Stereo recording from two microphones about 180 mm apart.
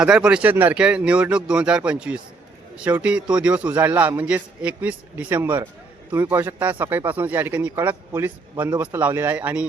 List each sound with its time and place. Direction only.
0.0 s a man's voice: 5° right (ahead or behind)